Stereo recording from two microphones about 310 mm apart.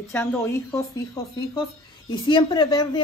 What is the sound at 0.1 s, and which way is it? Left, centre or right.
A woman's voice, centre.